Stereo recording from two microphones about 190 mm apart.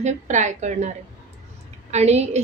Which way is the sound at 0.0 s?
40° right (ahead or behind).